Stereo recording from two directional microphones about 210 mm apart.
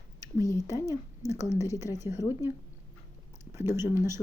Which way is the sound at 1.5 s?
15° right (ahead or behind).